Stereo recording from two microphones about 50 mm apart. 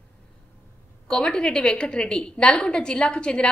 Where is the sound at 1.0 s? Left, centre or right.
Centre.